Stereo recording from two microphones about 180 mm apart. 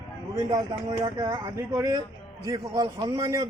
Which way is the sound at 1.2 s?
20° right (ahead or behind).